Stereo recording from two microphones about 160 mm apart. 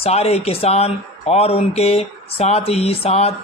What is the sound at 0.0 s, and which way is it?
A man's voice, 40° left (ahead or behind).